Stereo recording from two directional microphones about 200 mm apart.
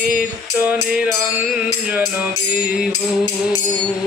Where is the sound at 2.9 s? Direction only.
20° left (ahead or behind).